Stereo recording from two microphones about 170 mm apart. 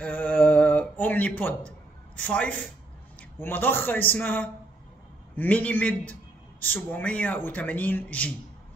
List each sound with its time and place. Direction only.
0.0 s mantra: 10° left (ahead or behind)
2.1 s speech: 10° left (ahead or behind)